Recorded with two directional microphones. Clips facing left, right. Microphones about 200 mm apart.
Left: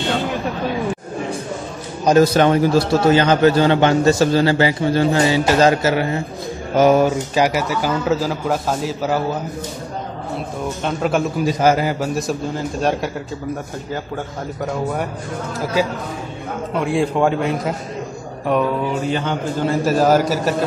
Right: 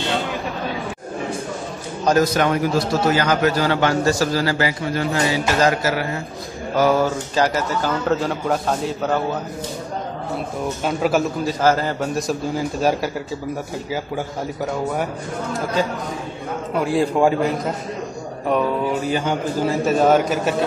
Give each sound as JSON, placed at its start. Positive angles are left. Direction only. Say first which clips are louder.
{"t": 2.1, "sound": "a man's voice", "louder": "left 6 dB", "side_deg": 30}
{"t": 10.8, "sound": "a man's voice", "louder": "even", "side_deg": -5}
{"t": 11.4, "sound": "a man's voice", "louder": "left 2 dB", "side_deg": 15}
{"t": 16.7, "sound": "a man's voice", "louder": "even", "side_deg": 0}